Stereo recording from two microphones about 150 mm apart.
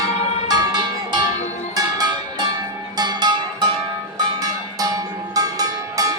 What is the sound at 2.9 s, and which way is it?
Music, 25° right (ahead or behind).